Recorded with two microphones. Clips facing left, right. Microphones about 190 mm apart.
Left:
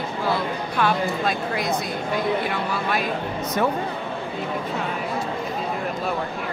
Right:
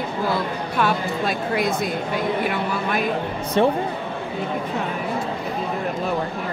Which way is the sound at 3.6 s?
25° right (ahead or behind).